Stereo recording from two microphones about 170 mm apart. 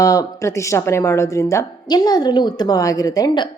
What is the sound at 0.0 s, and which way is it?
A woman's voice, 20° left (ahead or behind).